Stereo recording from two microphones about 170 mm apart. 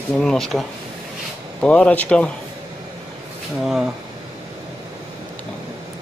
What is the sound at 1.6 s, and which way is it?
Speech, 5° left (ahead or behind).